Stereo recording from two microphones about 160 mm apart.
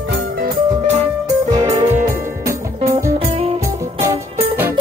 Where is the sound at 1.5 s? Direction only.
25° right (ahead or behind).